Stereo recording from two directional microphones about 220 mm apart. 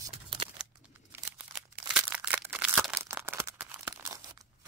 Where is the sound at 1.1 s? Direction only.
5° right (ahead or behind).